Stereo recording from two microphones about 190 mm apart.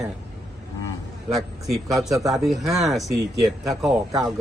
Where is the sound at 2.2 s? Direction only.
15° right (ahead or behind).